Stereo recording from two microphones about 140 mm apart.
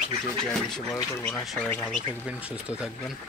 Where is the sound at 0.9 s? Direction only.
20° left (ahead or behind).